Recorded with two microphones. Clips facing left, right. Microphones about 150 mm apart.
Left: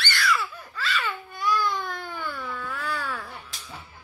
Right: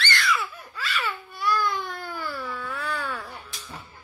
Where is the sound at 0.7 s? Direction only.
10° right (ahead or behind).